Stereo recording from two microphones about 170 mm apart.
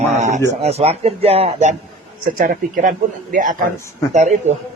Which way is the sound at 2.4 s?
50° right (ahead or behind).